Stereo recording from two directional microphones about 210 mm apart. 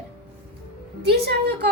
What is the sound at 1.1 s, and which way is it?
Speech, 50° right (ahead or behind).